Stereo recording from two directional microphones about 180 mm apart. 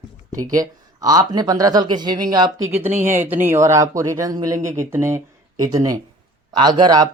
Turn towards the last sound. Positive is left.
turn(degrees=-20)  # may be behind; listen again after turning